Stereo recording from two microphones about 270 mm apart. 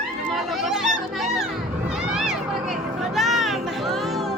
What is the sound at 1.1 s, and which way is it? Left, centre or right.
Music, centre.